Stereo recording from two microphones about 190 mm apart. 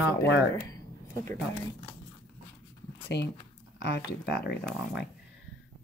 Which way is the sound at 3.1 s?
65° left (ahead or behind).